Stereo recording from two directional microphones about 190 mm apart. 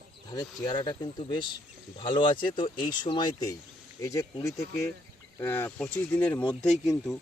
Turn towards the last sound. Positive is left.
turn(degrees=0)  # may be behind; listen again after turning